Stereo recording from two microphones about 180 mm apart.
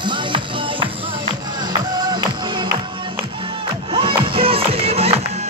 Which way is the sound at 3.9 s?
30° right (ahead or behind).